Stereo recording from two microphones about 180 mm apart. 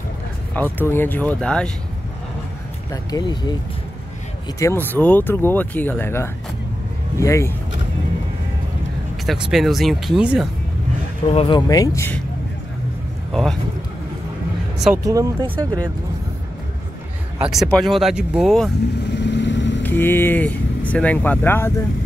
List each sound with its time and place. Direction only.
0.6 s speech: 10° left (ahead or behind)
2.9 s speech: 20° left (ahead or behind)
4.6 s speech: 15° left (ahead or behind)
9.2 s speech: centre (ahead or behind)
11.2 s speech: 30° left (ahead or behind); by 12.2 s 15° left (ahead or behind)
13.3 s speech: centre (ahead or behind)
15.0 s speech: 20° right (ahead or behind)
17.4 s speech: centre (ahead or behind)
19.0 s vehicle: 75° left (ahead or behind)
19.8 s speech: 10° left (ahead or behind)